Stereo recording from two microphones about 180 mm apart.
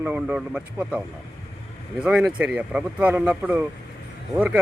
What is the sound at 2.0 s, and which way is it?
Speech, 5° right (ahead or behind).